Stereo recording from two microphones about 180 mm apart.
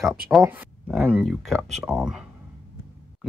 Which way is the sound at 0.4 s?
10° right (ahead or behind).